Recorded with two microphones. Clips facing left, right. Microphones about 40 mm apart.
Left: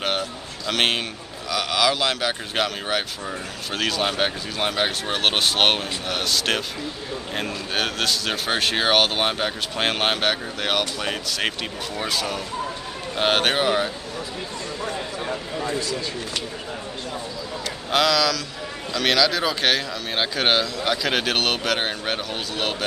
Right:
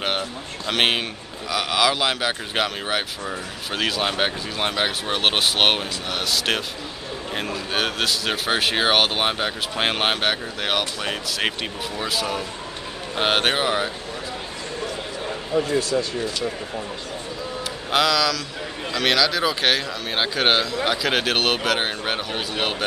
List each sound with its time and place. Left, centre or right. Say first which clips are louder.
0.7 s speech: right 1 dB; centre
15.5 s speech: right 9 dB; right
17.9 s speech: even; centre